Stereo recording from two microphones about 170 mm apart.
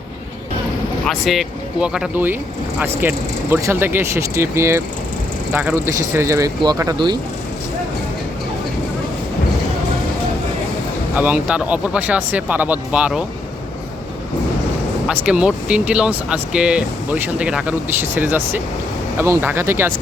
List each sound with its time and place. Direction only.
1.0 s speech: centre (ahead or behind); by 7.2 s 20° right (ahead or behind)
11.1 s speech: 10° right (ahead or behind)
15.0 s speech: 5° right (ahead or behind)